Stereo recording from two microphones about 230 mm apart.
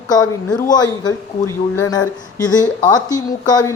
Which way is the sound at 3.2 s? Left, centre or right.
Centre.